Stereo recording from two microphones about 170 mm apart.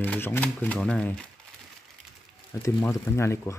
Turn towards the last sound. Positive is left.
turn(degrees=15)  # may be behind; listen again after turning